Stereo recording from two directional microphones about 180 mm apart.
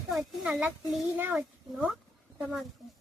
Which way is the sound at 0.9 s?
10° right (ahead or behind).